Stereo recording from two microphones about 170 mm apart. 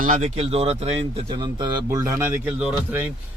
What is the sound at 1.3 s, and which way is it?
Speech, 25° right (ahead or behind).